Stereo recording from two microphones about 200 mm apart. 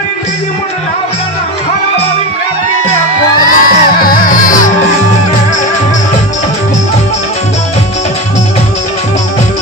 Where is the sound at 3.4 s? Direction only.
45° left (ahead or behind).